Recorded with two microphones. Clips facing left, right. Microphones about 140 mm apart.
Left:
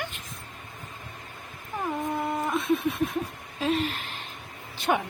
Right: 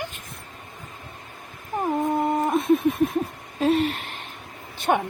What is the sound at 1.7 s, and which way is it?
Cat, 40° right (ahead or behind).